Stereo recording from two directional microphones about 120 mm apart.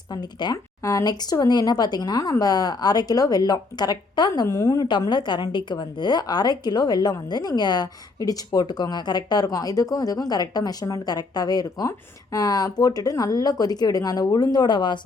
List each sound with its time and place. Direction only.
0.1 s a woman's voice: 35° left (ahead or behind)
4.9 s a woman's voice: 40° left (ahead or behind)